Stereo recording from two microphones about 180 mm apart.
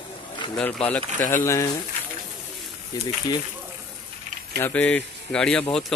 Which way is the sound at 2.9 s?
20° left (ahead or behind).